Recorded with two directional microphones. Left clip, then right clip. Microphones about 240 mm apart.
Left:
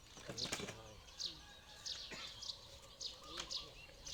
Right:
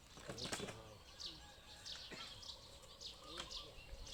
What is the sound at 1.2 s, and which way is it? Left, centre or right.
Bird, left.